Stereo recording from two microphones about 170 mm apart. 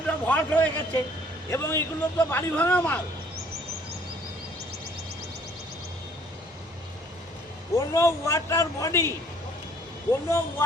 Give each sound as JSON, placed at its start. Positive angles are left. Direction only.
{"t": 0.1, "sound": "a sound", "side_deg": 10}
{"t": 1.5, "sound": "a man's voice", "side_deg": 15}
{"t": 7.8, "sound": "a man's voice", "side_deg": 15}